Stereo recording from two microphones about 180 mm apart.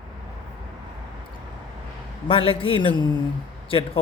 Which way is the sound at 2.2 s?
30° left (ahead or behind).